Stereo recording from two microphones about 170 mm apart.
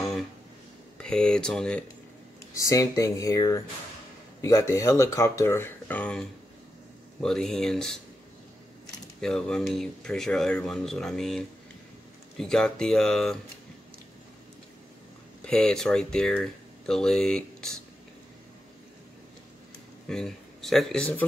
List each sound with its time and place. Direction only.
0.9 s speech: 5° left (ahead or behind)
2.5 s speech: 20° left (ahead or behind); by 8.0 s 5° left (ahead or behind)
9.2 s speech: 5° left (ahead or behind)
15.4 s speech: 5° left (ahead or behind)
20.1 s speech: centre (ahead or behind)